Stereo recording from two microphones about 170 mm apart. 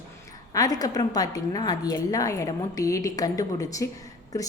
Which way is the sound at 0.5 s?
20° left (ahead or behind).